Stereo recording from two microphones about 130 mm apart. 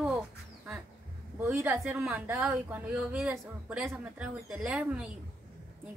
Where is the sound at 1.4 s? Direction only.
15° right (ahead or behind).